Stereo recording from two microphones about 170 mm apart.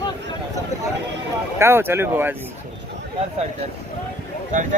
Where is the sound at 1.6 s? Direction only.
15° right (ahead or behind).